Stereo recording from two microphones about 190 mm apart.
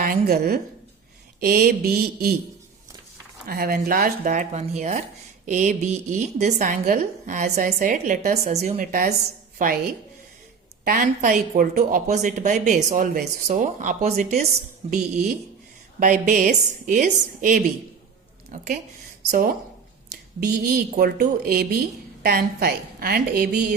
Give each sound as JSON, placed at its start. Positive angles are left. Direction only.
{"t": 0.0, "sound": "a woman's voice", "side_deg": -55}
{"t": 3.4, "sound": "a woman's voice", "side_deg": -50}
{"t": 16.0, "sound": "a woman's voice", "side_deg": -40}
{"t": 20.4, "sound": "a woman's voice", "side_deg": -55}